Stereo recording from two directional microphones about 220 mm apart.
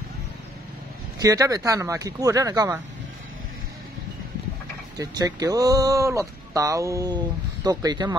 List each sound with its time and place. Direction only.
1.2 s speech: 15° right (ahead or behind)
4.9 s speech: 15° right (ahead or behind)